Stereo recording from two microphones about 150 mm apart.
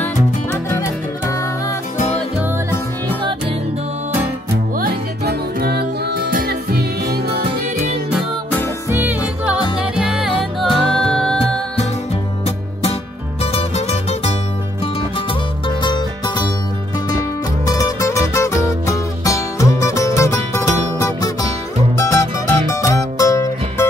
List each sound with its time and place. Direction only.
4.7 s music: 85° right
8.5 s music: 10° left (ahead or behind)
8.9 s music: 10° right (ahead or behind)
13.4 s music: 45° left (ahead or behind)
15.8 s music: 30° left (ahead or behind)
17.6 s music: 20° left (ahead or behind)